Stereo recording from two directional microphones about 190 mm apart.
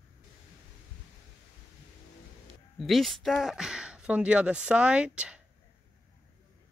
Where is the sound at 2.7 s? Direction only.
Centre (ahead or behind).